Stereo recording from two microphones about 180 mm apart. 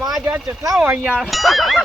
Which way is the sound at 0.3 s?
10° right (ahead or behind).